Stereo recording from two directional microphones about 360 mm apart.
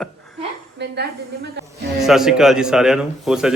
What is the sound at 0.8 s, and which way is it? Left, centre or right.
Speech, right.